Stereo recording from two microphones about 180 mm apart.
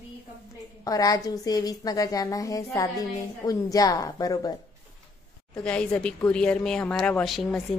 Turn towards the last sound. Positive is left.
turn(degrees=0)  # may be behind; listen again after turning